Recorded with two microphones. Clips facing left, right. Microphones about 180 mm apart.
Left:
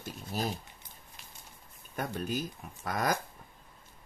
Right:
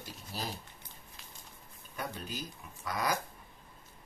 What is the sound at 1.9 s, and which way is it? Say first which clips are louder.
Speech: left 6 dB; 50° left (ahead or behind).